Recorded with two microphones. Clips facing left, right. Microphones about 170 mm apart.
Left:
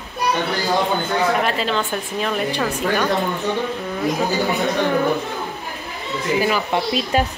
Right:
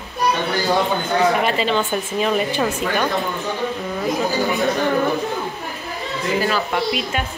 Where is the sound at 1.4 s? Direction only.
Centre (ahead or behind).